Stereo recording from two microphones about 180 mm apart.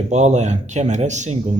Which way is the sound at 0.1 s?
40° right (ahead or behind).